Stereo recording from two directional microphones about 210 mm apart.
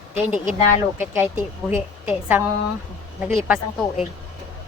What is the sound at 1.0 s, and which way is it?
A woman's voice, 10° right (ahead or behind).